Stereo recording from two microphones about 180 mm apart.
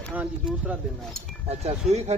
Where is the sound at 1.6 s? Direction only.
35° right (ahead or behind).